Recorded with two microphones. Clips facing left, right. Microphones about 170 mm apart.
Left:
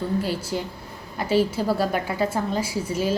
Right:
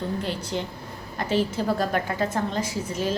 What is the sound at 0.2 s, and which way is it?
A woman's voice, 5° left (ahead or behind).